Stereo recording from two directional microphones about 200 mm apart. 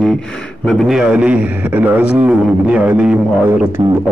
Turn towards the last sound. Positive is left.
turn(degrees=-30)  # may be behind; listen again after turning